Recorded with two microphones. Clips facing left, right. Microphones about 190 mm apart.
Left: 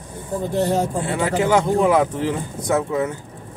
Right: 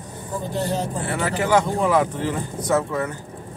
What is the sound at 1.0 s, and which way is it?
Speech, 20° left (ahead or behind).